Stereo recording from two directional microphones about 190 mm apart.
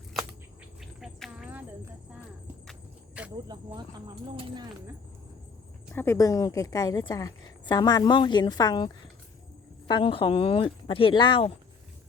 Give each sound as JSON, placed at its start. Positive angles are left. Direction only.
{"t": 0.8, "sound": "cricket", "side_deg": 0}
{"t": 3.3, "sound": "speech", "side_deg": -20}
{"t": 5.9, "sound": "a woman's voice", "side_deg": 10}